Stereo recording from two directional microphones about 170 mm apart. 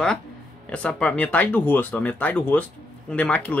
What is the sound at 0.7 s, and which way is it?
Speech, 5° left (ahead or behind).